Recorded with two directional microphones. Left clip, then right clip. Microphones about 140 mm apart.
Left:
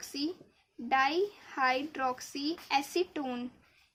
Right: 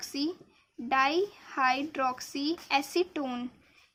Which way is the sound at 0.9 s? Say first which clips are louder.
Right 2 dB; 30° right (ahead or behind).